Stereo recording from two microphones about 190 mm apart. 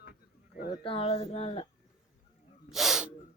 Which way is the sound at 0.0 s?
50° left (ahead or behind).